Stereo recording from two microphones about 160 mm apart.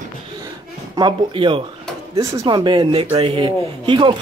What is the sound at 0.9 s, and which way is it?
Speech, 30° right (ahead or behind).